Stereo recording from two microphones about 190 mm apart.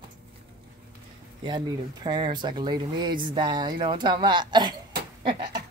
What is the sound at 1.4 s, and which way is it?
Speech, 20° right (ahead or behind).